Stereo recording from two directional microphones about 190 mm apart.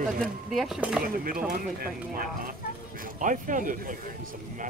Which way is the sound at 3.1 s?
45° right (ahead or behind).